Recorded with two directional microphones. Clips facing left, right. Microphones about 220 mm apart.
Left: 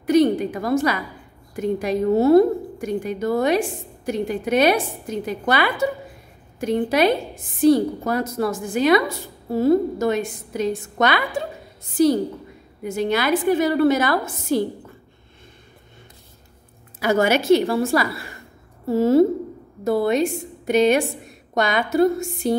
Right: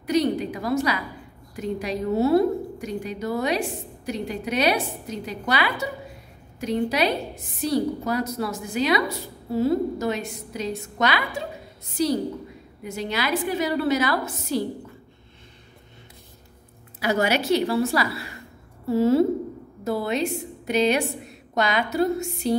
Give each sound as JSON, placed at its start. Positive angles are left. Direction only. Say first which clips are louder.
{"t": 0.0, "sound": "a sound", "louder": "left 6 dB", "side_deg": 50}
{"t": 1.5, "sound": "a woman's voice", "louder": "left 6 dB", "side_deg": 50}
{"t": 17.0, "sound": "a woman's voice", "louder": "left 4 dB", "side_deg": 50}